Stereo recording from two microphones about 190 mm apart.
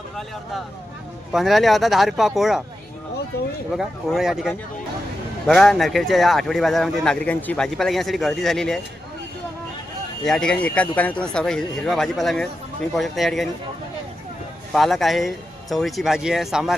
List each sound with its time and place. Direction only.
1.3 s speech: centre (ahead or behind)
3.8 s speech: centre (ahead or behind)
10.2 s speech: 5° left (ahead or behind)
14.7 s speech: centre (ahead or behind)